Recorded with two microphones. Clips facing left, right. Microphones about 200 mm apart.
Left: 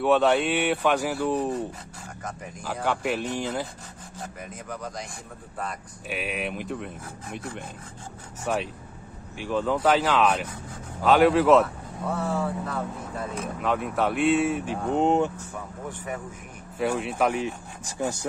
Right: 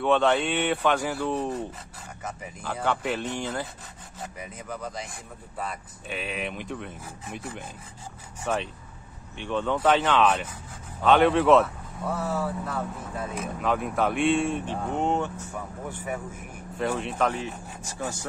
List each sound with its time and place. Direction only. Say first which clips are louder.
0.0 s speech: left 2 dB; 5° left (ahead or behind)
2.6 s speech: left 1 dB; 10° left (ahead or behind)
4.2 s speech: even; 5° right (ahead or behind)
6.0 s speech: left 2 dB; 10° left (ahead or behind)
15.0 s speech: left 5 dB; 15° left (ahead or behind)
15.9 s speech: right 1 dB; 10° right (ahead or behind)
16.7 s speech: left 2 dB; 5° left (ahead or behind)